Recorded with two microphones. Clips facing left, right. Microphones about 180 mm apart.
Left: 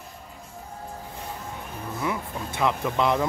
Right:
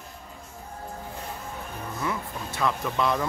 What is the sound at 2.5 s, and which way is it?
Speech, 20° left (ahead or behind).